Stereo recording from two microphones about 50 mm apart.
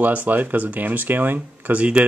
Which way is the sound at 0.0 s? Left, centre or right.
Right.